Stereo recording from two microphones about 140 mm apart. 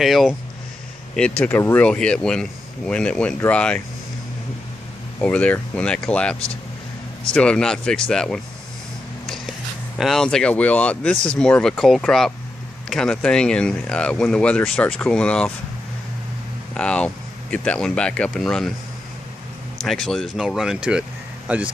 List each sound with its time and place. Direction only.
0.0 s speech: centre (ahead or behind)
1.4 s speech: 15° left (ahead or behind)
5.2 s speech: 10° left (ahead or behind)
7.3 s speech: 5° left (ahead or behind)
16.7 s speech: 10° left (ahead or behind)
19.8 s speech: 5° left (ahead or behind)